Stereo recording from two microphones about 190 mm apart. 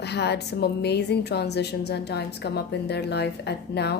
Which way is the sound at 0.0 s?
60° left (ahead or behind).